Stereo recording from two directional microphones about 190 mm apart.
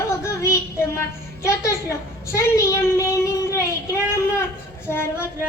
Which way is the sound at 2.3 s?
15° left (ahead or behind).